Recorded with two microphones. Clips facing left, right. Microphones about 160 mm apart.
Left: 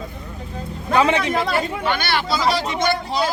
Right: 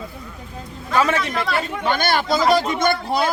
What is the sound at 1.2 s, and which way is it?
Speech, 55° left (ahead or behind).